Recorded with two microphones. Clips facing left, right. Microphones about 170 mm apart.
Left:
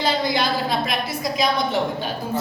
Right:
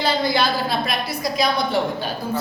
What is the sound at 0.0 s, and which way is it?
A woman's voice, 20° left (ahead or behind).